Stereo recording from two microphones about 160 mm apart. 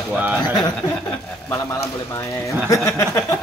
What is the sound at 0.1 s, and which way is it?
Speech, 5° right (ahead or behind).